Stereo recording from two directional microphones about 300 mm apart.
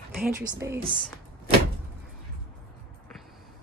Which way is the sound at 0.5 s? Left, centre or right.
Centre.